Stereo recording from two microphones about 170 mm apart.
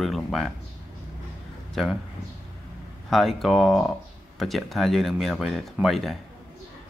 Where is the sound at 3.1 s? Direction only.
Centre (ahead or behind).